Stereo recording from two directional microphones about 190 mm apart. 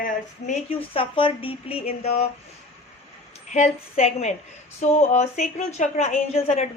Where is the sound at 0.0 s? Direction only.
40° left (ahead or behind).